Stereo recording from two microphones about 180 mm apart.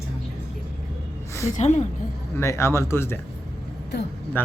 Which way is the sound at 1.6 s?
40° left (ahead or behind).